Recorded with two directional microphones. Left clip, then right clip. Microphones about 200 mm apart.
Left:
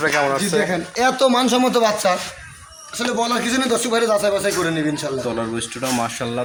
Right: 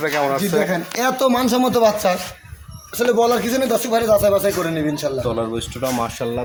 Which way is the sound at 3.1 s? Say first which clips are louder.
Even; 40° right (ahead or behind).